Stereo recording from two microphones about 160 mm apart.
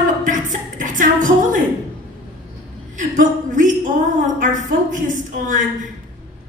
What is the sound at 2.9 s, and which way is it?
A woman's voice, 55° right (ahead or behind).